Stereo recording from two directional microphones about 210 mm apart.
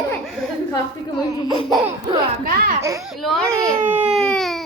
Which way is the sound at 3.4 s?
15° right (ahead or behind).